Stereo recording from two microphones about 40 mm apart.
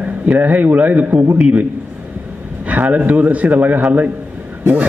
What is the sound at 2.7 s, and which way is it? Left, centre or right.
A man's voice, right.